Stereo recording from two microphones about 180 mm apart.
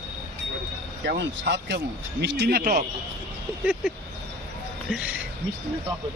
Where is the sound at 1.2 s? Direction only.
75° right (ahead or behind); by 2.8 s 60° right (ahead or behind).